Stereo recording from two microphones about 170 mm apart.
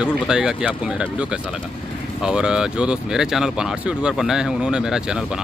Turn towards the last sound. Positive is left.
turn(degrees=-5)  # may be behind; listen again after turning